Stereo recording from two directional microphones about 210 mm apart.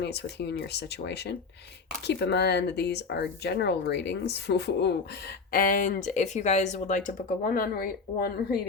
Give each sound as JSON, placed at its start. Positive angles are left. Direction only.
{"t": 0.0, "sound": "speech", "side_deg": 55}
{"t": 5.5, "sound": "speech", "side_deg": 40}